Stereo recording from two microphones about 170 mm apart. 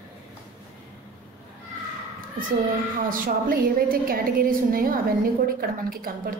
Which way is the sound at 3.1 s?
55° right (ahead or behind).